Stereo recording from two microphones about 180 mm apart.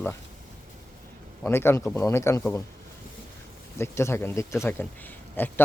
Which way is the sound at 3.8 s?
15° left (ahead or behind).